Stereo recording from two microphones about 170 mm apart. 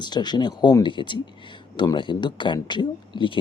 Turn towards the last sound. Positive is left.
turn(degrees=30)  # may be behind; listen again after turning